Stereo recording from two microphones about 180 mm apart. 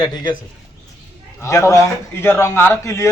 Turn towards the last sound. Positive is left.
turn(degrees=15)  # may be behind; listen again after turning